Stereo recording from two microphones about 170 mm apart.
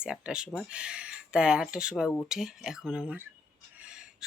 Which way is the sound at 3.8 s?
5° right (ahead or behind).